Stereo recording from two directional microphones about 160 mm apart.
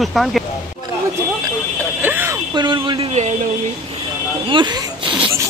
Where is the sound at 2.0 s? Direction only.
10° right (ahead or behind).